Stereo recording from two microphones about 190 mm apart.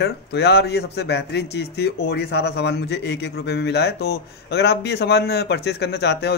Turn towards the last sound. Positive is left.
turn(degrees=60)  # may be behind; listen again after turning